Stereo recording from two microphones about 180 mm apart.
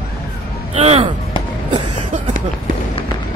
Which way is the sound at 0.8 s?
35° right (ahead or behind).